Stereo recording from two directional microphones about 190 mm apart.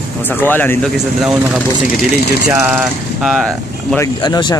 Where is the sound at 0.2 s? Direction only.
10° left (ahead or behind).